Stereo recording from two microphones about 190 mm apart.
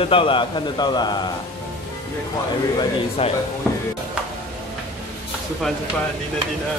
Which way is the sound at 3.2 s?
30° left (ahead or behind).